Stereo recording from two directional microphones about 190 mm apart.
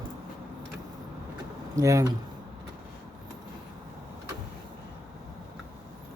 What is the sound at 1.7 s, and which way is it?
Speech, 15° right (ahead or behind).